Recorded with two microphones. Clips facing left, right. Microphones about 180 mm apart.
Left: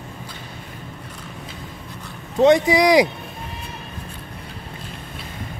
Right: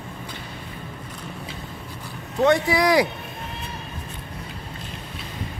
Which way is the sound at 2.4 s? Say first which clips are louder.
Left 4 dB; 20° left (ahead or behind).